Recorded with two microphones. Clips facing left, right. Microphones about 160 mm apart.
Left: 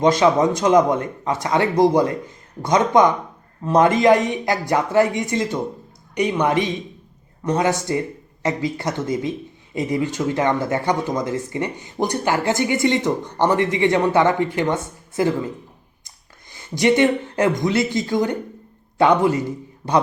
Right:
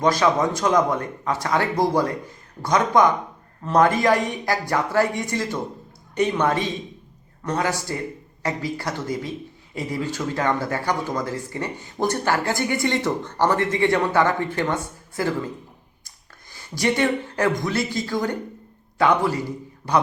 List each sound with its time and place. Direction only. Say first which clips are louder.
0.0 s a man's voice: left 4 dB; 20° left (ahead or behind)